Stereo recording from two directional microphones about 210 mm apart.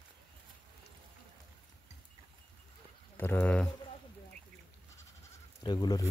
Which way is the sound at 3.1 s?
10° left (ahead or behind).